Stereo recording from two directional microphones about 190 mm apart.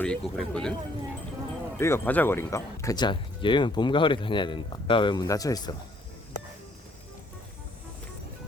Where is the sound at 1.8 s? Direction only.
15° left (ahead or behind).